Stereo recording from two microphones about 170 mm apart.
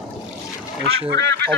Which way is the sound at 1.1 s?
85° right.